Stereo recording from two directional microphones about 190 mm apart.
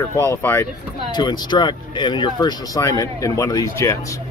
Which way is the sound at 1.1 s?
20° left (ahead or behind).